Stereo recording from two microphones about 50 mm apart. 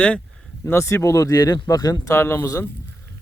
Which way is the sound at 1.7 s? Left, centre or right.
Left.